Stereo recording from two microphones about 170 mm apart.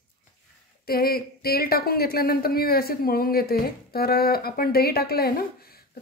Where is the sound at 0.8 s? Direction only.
65° left (ahead or behind).